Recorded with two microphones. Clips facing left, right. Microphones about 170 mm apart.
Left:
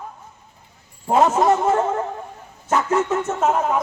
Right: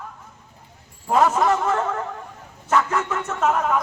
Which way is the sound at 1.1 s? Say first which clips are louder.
Left 2 dB; 25° left (ahead or behind).